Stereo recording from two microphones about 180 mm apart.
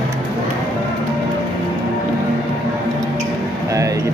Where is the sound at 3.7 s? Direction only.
20° right (ahead or behind).